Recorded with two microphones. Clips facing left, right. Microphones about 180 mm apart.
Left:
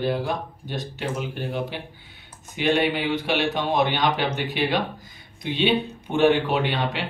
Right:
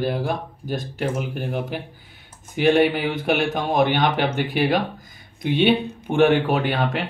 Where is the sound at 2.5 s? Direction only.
50° right (ahead or behind).